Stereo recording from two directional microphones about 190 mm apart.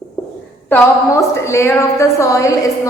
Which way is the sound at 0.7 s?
15° left (ahead or behind).